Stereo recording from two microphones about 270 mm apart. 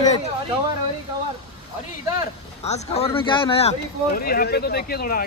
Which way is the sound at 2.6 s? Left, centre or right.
Left.